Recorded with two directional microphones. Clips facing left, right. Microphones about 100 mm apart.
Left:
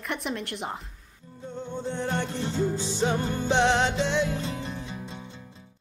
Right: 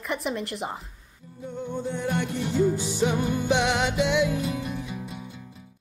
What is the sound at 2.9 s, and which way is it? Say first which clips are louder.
Music: right 2 dB; 30° left (ahead or behind).